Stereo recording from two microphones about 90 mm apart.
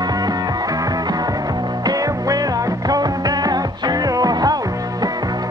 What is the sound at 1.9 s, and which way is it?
Music, 45° right (ahead or behind).